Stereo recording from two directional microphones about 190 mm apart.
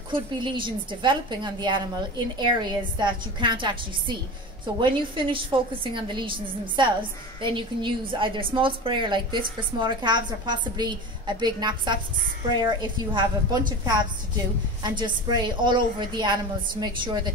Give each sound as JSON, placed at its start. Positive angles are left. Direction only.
{"t": 0.1, "sound": "a woman's voice", "side_deg": -25}